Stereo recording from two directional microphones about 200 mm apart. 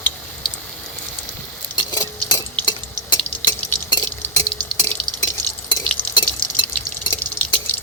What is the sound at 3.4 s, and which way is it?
Drip, 20° left (ahead or behind).